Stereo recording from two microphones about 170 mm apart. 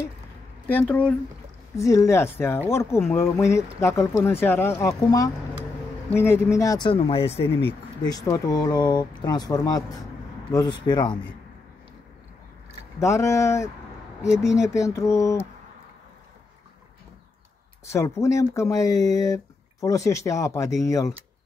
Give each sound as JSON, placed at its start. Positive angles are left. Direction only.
{"t": 0.7, "sound": "speech", "side_deg": 10}
{"t": 8.0, "sound": "speech", "side_deg": 20}
{"t": 13.0, "sound": "speech", "side_deg": 15}
{"t": 17.8, "sound": "speech", "side_deg": 15}